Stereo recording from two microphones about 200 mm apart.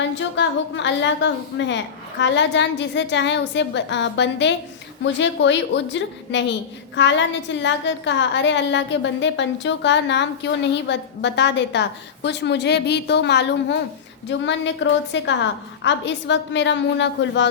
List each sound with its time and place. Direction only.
0.0 s a woman's voice: 65° left (ahead or behind)